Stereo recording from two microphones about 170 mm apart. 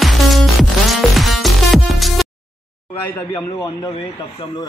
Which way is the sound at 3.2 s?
15° left (ahead or behind).